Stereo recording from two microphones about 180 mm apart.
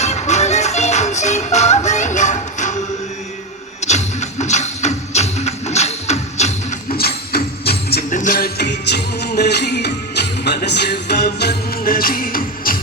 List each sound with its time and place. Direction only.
0.0 s music: 40° left (ahead or behind)
3.8 s music: 40° left (ahead or behind)
6.9 s music: 60° left (ahead or behind)